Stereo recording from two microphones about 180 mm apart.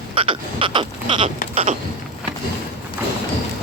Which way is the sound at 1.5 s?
35° right (ahead or behind).